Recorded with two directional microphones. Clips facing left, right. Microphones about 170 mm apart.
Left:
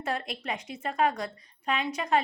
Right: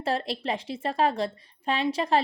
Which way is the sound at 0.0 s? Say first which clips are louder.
Right 5 dB; 30° right (ahead or behind).